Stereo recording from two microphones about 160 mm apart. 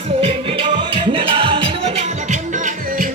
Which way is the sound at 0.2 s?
35° right (ahead or behind).